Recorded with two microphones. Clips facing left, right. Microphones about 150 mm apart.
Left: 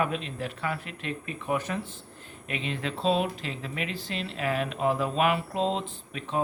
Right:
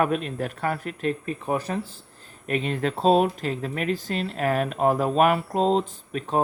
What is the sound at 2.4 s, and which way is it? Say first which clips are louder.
Speech: right 7 dB; 45° right (ahead or behind).